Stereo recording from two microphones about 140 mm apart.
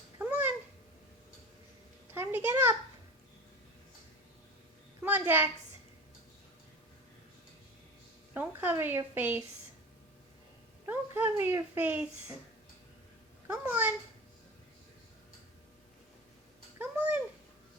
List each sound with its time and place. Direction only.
0.2 s babbling: 10° right (ahead or behind)
2.1 s a sound: 15° right (ahead or behind)
5.0 s a woman's voice: 15° right (ahead or behind)
8.3 s a child's voice: 15° right (ahead or behind)
10.8 s a child's voice: 15° right (ahead or behind)
13.5 s a child's voice: 10° right (ahead or behind)
16.7 s a sound: 10° right (ahead or behind)